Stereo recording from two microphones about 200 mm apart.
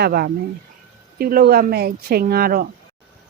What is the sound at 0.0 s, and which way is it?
A woman's voice, 50° right (ahead or behind).